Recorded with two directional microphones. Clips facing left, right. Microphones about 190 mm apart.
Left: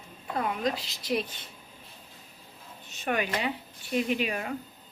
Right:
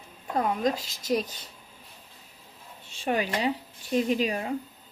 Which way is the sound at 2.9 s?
30° right (ahead or behind).